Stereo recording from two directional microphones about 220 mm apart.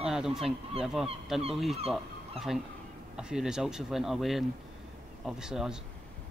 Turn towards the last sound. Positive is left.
turn(degrees=-5)  # may be behind; listen again after turning